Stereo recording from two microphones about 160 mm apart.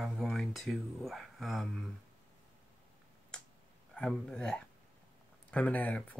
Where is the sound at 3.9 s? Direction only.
5° left (ahead or behind).